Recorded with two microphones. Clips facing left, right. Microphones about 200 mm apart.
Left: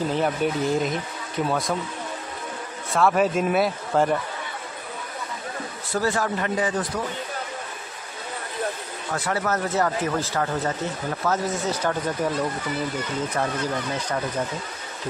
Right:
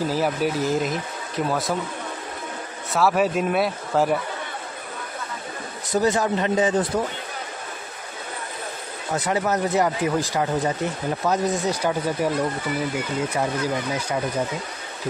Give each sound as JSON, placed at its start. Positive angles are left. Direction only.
{"t": 0.1, "sound": "speech", "side_deg": -5}
{"t": 2.9, "sound": "speech", "side_deg": -5}
{"t": 5.9, "sound": "speech", "side_deg": -20}
{"t": 9.1, "sound": "speech", "side_deg": -20}